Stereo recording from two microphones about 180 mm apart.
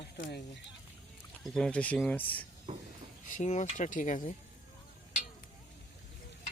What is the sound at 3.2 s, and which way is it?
Speech, 45° left (ahead or behind).